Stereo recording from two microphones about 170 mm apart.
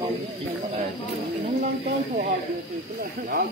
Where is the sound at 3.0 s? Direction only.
60° right (ahead or behind).